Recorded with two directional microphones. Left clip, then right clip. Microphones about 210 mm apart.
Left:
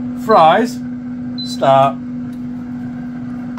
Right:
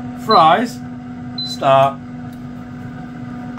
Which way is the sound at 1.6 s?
50° left (ahead or behind).